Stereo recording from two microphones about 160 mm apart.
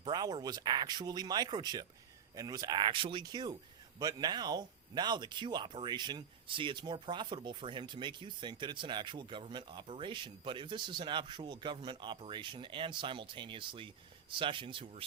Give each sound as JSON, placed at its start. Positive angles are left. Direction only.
{"t": 0.0, "sound": "speech", "side_deg": -25}